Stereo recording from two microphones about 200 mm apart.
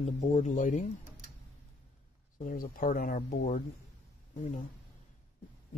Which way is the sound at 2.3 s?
45° left (ahead or behind).